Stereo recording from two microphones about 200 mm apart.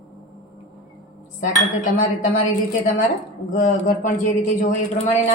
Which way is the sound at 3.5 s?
40° left (ahead or behind).